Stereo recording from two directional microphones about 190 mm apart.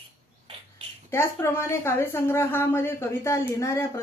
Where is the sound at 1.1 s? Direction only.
10° left (ahead or behind).